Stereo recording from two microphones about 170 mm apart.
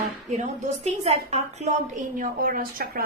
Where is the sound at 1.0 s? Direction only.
40° right (ahead or behind).